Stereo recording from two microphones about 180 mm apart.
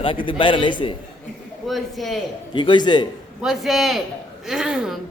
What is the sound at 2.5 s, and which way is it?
Speech, 25° left (ahead or behind).